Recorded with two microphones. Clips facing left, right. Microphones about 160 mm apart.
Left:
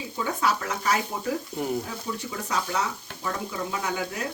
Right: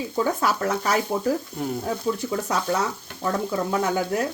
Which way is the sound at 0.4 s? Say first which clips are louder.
Right 3 dB; 45° right (ahead or behind).